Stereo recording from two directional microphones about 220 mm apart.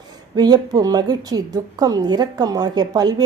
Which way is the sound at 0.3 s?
20° right (ahead or behind).